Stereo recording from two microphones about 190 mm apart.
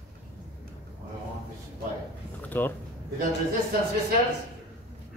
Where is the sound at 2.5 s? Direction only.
10° left (ahead or behind).